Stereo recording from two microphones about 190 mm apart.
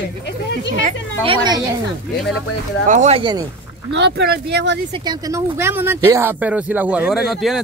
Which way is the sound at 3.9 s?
70° right (ahead or behind).